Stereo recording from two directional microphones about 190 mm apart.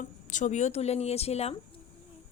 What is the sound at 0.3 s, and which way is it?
A woman's voice, 40° left (ahead or behind).